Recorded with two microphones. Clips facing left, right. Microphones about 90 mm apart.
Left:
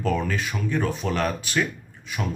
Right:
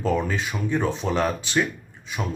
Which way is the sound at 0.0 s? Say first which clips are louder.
Right 1 dB; 20° right (ahead or behind).